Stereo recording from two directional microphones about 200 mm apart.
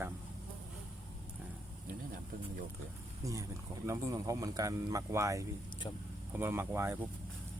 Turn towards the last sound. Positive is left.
turn(degrees=-10)  # may be behind; listen again after turning